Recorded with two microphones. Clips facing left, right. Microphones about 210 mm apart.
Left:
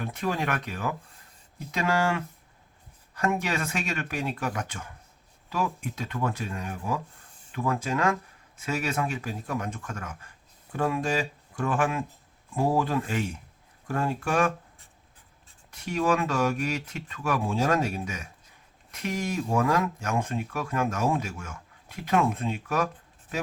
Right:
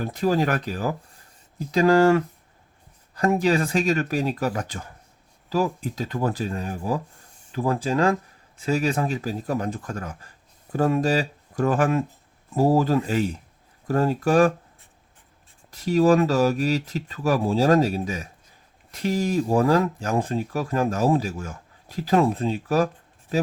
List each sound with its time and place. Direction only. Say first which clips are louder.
0.0 s speech: right 7 dB; 35° right (ahead or behind)
15.7 s speech: right 8 dB; 35° right (ahead or behind)